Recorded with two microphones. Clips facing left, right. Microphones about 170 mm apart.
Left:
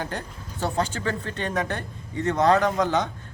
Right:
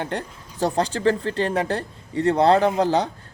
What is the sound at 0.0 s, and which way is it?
Speech, 30° right (ahead or behind).